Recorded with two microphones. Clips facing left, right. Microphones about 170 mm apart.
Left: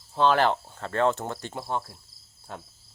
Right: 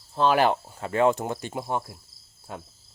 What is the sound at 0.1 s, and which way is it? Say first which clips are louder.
Speech: right 1 dB; 5° right (ahead or behind).